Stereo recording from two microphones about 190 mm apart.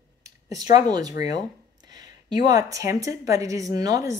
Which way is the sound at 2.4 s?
20° right (ahead or behind).